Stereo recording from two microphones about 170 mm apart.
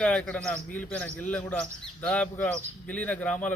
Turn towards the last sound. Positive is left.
turn(degrees=10)  # may be behind; listen again after turning